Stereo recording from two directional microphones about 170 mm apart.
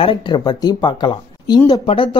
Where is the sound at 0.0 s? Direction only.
30° left (ahead or behind).